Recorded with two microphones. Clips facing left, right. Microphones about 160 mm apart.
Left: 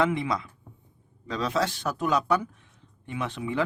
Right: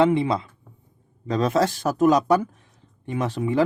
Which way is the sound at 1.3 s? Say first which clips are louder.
Right 6 dB; 45° right (ahead or behind).